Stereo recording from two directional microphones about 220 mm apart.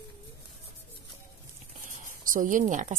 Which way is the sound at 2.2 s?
35° right (ahead or behind).